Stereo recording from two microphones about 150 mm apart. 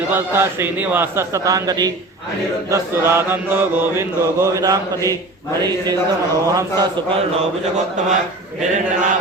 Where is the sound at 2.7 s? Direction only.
15° right (ahead or behind).